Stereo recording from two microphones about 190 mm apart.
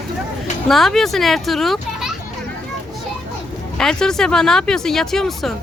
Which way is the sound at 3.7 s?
5° left (ahead or behind).